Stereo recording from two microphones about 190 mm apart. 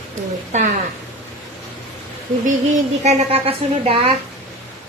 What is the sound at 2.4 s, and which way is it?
A woman's voice, 40° right (ahead or behind).